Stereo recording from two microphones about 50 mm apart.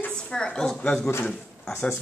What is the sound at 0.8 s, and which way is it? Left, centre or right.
Speech, left.